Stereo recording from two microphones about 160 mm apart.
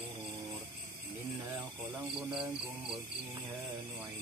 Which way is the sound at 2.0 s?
Centre (ahead or behind).